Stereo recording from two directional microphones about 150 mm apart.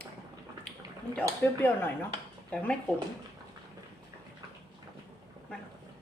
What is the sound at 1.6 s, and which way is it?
Speech, 15° left (ahead or behind).